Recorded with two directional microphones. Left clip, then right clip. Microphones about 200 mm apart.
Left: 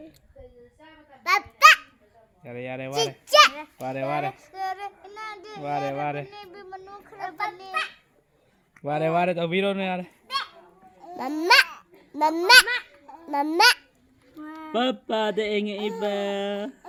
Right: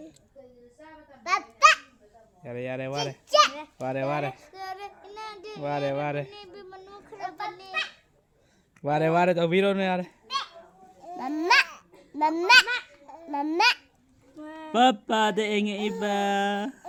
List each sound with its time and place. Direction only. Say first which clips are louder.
1.2 s babbling: left 4 dB; 55° left (ahead or behind)
2.4 s mantra: right 1 dB; 20° right (ahead or behind)
3.2 s a child's voice: left 4 dB; 55° left (ahead or behind)
3.5 s child singing: right 1 dB; 20° right (ahead or behind)
8.8 s mantra: right 1 dB; 15° right (ahead or behind)
11.2 s speech: left 3 dB; 40° left (ahead or behind)
14.3 s mantra: right 3 dB; 25° right (ahead or behind)